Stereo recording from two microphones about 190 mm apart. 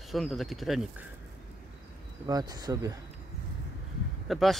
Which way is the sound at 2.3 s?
20° right (ahead or behind).